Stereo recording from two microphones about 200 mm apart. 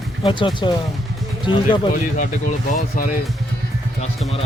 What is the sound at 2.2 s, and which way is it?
Speech, 40° left (ahead or behind).